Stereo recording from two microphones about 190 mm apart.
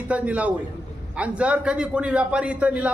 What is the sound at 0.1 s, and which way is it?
A man's voice, 5° right (ahead or behind).